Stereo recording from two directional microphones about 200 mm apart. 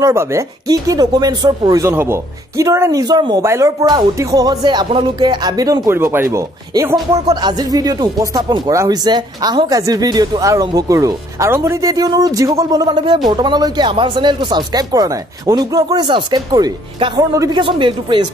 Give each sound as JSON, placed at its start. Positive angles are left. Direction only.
{"t": 0.0, "sound": "speech", "side_deg": -15}